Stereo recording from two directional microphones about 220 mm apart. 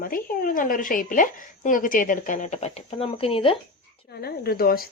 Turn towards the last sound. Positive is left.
turn(degrees=45)  # may be behind; listen again after turning